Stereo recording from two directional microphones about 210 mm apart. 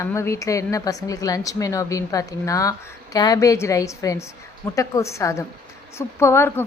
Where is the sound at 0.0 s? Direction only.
15° left (ahead or behind).